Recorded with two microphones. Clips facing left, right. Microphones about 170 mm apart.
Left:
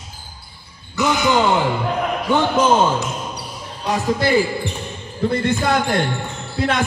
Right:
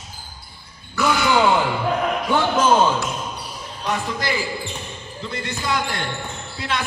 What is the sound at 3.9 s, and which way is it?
Speech, 35° left (ahead or behind).